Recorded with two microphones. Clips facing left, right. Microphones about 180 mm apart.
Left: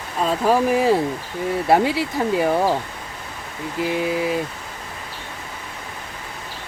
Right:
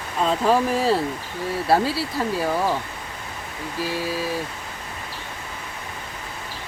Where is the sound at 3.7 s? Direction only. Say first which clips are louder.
Left 5 dB; 20° left (ahead or behind).